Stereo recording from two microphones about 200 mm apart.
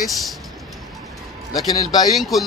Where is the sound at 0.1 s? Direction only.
Centre (ahead or behind).